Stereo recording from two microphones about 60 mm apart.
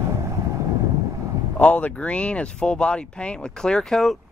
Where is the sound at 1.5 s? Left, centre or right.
Left; by 4.1 s centre.